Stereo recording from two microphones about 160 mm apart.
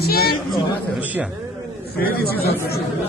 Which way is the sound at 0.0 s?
75° left (ahead or behind).